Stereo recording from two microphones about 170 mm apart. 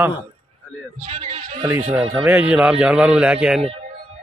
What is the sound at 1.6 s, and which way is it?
A man's voice, 15° right (ahead or behind).